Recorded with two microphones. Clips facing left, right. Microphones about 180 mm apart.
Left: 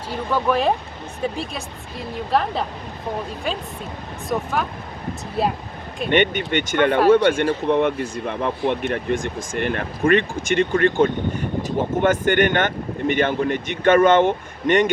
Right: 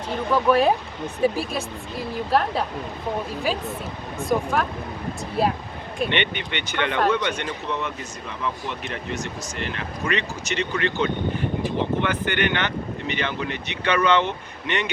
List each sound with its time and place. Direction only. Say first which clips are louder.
0.1 s speech: right 1 dB; centre (ahead or behind)
4.3 s speech: right 1 dB; 5° right (ahead or behind)
6.1 s speech: left 13 dB; 45° left (ahead or behind)